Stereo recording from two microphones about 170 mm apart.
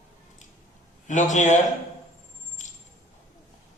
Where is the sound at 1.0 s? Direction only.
45° left (ahead or behind).